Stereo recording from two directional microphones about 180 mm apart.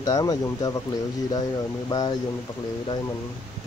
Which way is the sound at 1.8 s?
20° left (ahead or behind).